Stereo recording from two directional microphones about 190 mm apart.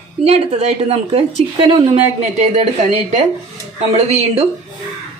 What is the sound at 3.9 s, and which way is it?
Speech, 35° right (ahead or behind).